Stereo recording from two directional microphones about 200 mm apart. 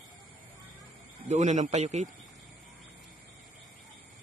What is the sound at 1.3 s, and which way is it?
Speech, 35° right (ahead or behind).